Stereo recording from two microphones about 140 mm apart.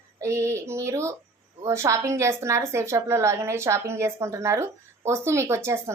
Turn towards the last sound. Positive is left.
turn(degrees=-20)  # may be behind; listen again after turning